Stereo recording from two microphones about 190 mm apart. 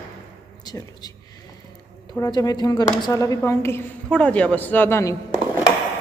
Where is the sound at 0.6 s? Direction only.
20° left (ahead or behind).